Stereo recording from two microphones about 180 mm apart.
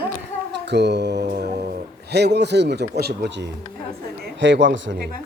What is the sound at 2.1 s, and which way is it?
Speech, 65° right (ahead or behind).